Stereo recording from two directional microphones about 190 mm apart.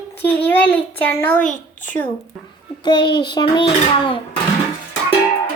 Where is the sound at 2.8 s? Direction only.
25° left (ahead or behind).